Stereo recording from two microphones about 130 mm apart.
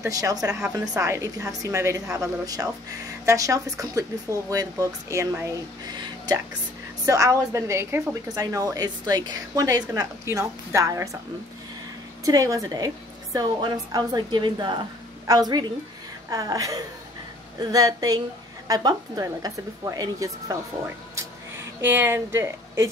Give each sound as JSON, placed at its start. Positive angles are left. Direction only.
{"t": 0.0, "sound": "a woman's voice", "side_deg": -25}
{"t": 12.3, "sound": "a woman's voice", "side_deg": -30}